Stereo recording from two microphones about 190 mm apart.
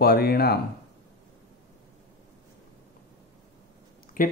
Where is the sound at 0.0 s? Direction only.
55° left (ahead or behind).